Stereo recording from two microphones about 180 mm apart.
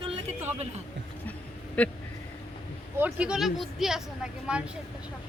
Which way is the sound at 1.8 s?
5° left (ahead or behind).